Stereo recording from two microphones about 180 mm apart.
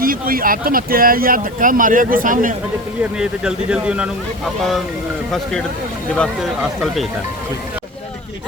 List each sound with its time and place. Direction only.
0.0 s speech: 50° right (ahead or behind)
3.2 s speech: 5° right (ahead or behind)
5.3 s speech: centre (ahead or behind)